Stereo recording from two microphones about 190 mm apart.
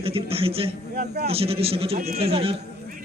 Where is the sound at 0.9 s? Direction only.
50° right (ahead or behind).